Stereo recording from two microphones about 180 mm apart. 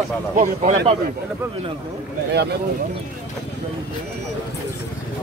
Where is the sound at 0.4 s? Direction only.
40° right (ahead or behind).